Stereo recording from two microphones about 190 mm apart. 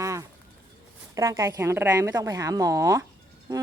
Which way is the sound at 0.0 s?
15° right (ahead or behind).